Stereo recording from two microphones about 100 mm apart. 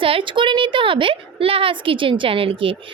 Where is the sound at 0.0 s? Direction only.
60° right (ahead or behind).